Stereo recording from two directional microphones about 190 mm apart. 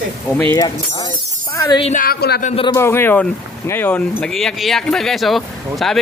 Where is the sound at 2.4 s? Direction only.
30° left (ahead or behind).